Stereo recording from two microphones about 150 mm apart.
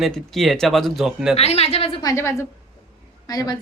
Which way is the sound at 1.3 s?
45° left (ahead or behind).